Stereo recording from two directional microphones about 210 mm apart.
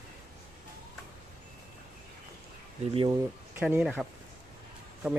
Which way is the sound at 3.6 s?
5° right (ahead or behind).